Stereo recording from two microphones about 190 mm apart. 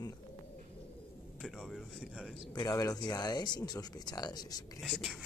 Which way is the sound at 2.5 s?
20° left (ahead or behind).